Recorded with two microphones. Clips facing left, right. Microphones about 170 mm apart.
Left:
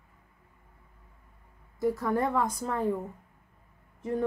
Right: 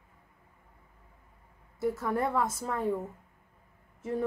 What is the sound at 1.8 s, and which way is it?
A woman's voice, 5° right (ahead or behind).